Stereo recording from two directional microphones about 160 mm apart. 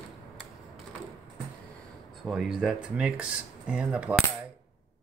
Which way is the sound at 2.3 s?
Centre (ahead or behind).